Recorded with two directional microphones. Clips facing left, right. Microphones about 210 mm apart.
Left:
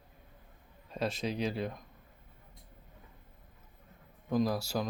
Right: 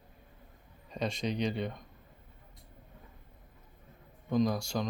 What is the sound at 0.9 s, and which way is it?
Speech, 5° left (ahead or behind).